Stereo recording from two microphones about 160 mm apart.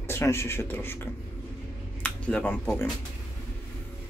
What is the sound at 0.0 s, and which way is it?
Speech, 15° left (ahead or behind).